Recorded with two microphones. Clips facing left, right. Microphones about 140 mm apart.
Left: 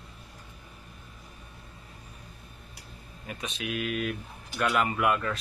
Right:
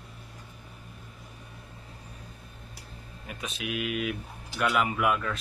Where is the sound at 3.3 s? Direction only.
Centre (ahead or behind).